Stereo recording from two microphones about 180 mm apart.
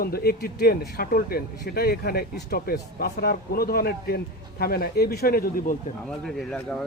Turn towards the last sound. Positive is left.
turn(degrees=5)  # may be behind; listen again after turning